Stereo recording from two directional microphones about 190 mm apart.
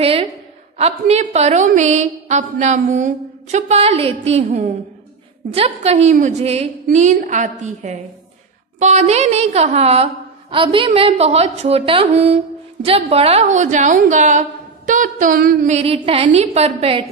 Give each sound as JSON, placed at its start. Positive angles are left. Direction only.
{"t": 0.0, "sound": "a woman's voice", "side_deg": -30}
{"t": 14.9, "sound": "a sound", "side_deg": -45}
{"t": 15.8, "sound": "a woman's voice", "side_deg": -30}